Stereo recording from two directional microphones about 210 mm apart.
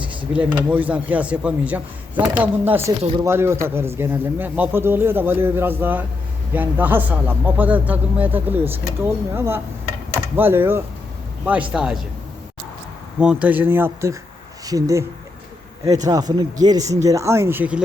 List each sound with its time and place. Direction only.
0.3 s a man's voice: 10° right (ahead or behind)
13.1 s speech: 5° right (ahead or behind)